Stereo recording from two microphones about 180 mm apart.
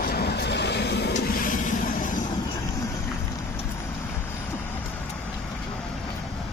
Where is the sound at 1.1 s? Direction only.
50° left (ahead or behind).